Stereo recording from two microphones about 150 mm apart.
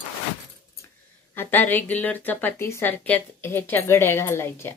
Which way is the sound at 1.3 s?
15° left (ahead or behind).